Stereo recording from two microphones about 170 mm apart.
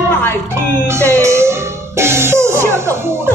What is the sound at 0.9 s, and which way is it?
Music, 15° right (ahead or behind).